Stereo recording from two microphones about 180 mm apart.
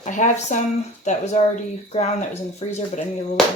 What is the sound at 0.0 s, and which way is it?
Speech, 40° left (ahead or behind).